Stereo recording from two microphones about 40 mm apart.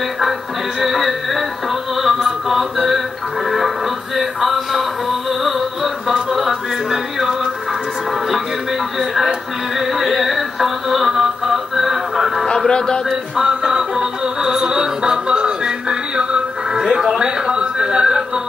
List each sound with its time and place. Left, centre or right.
0.7 s music: centre
6.0 s music: centre
9.8 s music: centre
12.6 s a man's voice: centre
13.1 s music: centre
17.5 s a sound: right